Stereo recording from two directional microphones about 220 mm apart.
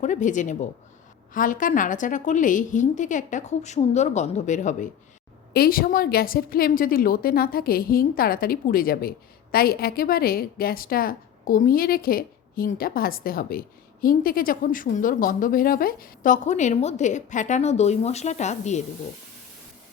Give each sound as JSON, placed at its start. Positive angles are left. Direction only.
{"t": 0.0, "sound": "a woman's voice", "side_deg": 35}